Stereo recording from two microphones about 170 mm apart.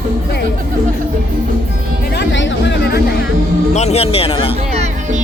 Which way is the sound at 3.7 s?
40° left (ahead or behind).